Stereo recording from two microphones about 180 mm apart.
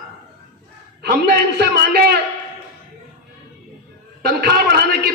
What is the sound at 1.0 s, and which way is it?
A man's voice, 60° right (ahead or behind).